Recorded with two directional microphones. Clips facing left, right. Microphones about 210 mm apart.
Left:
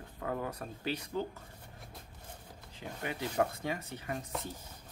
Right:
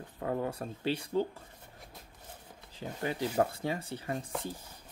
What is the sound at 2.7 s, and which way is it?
Speech, 35° right (ahead or behind).